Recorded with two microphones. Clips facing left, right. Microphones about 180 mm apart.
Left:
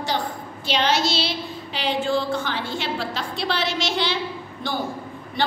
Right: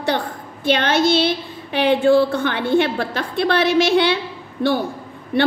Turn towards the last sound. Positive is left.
turn(degrees=-65)  # may be behind; listen again after turning